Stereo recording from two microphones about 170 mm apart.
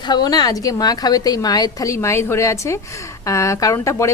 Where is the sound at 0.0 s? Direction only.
25° left (ahead or behind).